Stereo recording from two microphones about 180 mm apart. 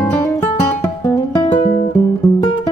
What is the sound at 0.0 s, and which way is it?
Music, 10° left (ahead or behind).